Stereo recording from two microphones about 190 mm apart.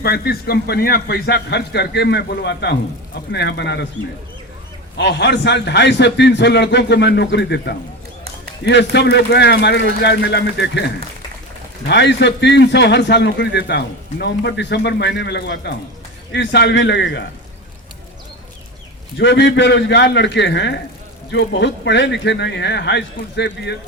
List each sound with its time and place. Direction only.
0.0 s a man's voice: 55° left (ahead or behind)
4.9 s a man's voice: 65° left (ahead or behind)
11.9 s a man's voice: 65° left (ahead or behind)
19.1 s a man's voice: 65° left (ahead or behind)